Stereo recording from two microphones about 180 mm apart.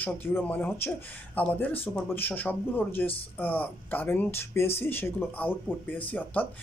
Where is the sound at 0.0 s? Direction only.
10° left (ahead or behind).